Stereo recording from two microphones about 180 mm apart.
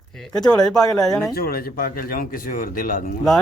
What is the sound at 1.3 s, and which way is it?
Speech, 55° left (ahead or behind).